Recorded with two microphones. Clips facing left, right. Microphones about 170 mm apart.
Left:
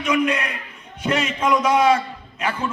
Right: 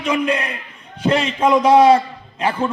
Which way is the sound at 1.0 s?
30° right (ahead or behind).